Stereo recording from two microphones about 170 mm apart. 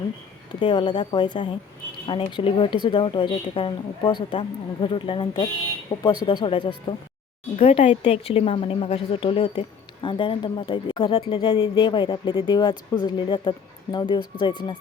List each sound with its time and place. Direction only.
0.6 s a woman's voice: 30° left (ahead or behind)
6.2 s a woman's voice: 30° left (ahead or behind)